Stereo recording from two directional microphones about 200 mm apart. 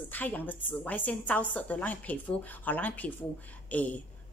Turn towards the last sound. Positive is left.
turn(degrees=5)  # may be behind; listen again after turning